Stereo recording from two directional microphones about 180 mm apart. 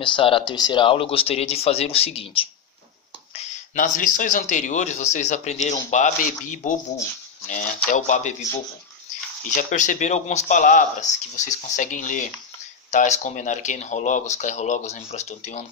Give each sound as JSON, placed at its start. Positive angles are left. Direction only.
{"t": 0.0, "sound": "speech", "side_deg": 30}
{"t": 3.3, "sound": "speech", "side_deg": 45}
{"t": 7.9, "sound": "speech", "side_deg": 45}